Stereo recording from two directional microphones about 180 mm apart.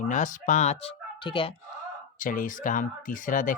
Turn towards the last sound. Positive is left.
turn(degrees=45)  # may be behind; listen again after turning